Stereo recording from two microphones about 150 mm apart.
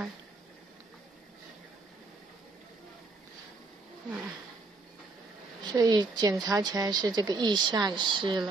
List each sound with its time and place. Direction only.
5.6 s a woman's voice: 25° right (ahead or behind)